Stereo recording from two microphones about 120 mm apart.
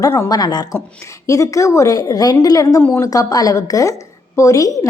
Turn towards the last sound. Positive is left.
turn(degrees=25)  # may be behind; listen again after turning